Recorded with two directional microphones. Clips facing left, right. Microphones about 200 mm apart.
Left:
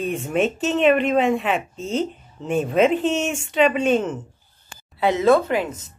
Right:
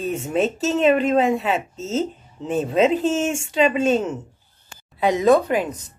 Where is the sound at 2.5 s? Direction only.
15° left (ahead or behind).